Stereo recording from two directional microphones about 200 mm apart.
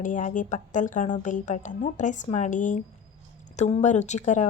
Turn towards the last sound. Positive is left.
turn(degrees=35)  # may be behind; listen again after turning